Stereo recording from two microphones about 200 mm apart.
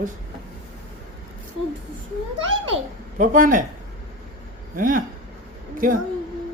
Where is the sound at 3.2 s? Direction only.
40° right (ahead or behind).